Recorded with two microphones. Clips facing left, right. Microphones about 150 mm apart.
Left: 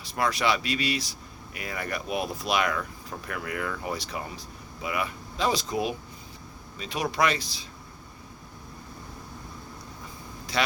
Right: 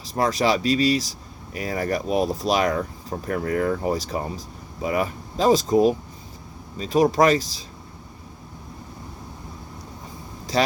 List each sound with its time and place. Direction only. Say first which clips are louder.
0.1 s speech: right 5 dB; 40° right (ahead or behind)